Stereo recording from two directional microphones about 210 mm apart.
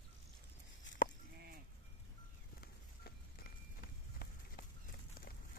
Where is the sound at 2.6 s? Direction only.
45° left (ahead or behind).